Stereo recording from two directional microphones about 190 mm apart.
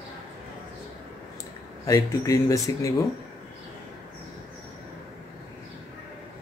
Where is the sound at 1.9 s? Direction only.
20° left (ahead or behind).